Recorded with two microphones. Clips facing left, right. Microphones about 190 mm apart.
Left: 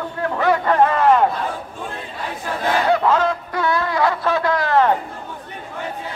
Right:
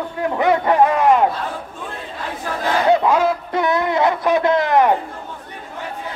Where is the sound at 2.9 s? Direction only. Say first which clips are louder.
Right 3 dB; 15° right (ahead or behind).